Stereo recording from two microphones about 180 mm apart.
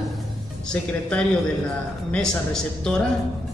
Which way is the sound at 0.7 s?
5° left (ahead or behind).